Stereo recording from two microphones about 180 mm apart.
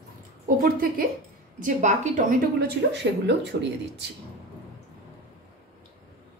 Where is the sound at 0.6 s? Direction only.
55° right (ahead or behind).